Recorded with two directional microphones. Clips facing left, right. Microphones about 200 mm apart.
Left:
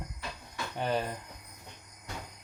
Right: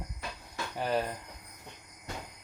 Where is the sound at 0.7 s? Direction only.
Centre (ahead or behind).